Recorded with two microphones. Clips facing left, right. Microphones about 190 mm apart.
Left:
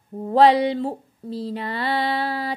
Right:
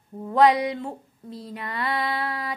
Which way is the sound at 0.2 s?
30° left (ahead or behind).